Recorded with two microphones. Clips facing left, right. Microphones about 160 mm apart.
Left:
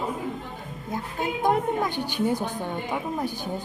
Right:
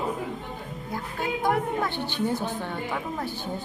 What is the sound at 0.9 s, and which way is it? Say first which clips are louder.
A woman's voice: left 1 dB; 20° left (ahead or behind).